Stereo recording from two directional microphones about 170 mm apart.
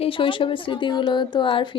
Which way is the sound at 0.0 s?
30° left (ahead or behind).